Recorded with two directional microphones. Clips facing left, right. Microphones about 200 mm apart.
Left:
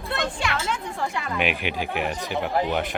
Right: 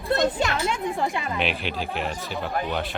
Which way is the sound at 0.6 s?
20° right (ahead or behind).